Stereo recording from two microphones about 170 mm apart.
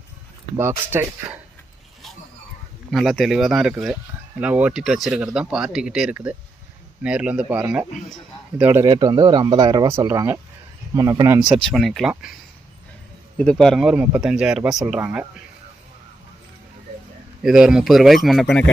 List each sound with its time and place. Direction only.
0.5 s speech: 15° right (ahead or behind)
2.9 s speech: centre (ahead or behind)
8.8 s speech: 25° right (ahead or behind)
11.4 s speech: centre (ahead or behind)
13.4 s speech: 5° left (ahead or behind)
17.4 s speech: 5° right (ahead or behind)